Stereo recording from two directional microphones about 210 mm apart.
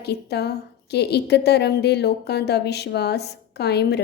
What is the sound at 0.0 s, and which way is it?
A woman's voice, 50° left (ahead or behind).